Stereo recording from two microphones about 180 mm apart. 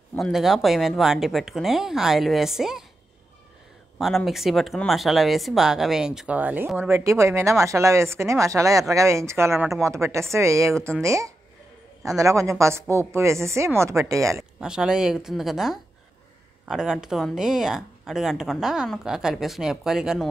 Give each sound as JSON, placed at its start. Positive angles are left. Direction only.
{"t": 0.2, "sound": "speech", "side_deg": 0}
{"t": 4.0, "sound": "speech", "side_deg": 0}
{"t": 14.6, "sound": "speech", "side_deg": -5}